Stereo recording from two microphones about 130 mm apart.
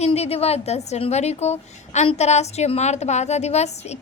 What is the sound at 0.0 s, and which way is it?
A woman's voice, 50° left (ahead or behind).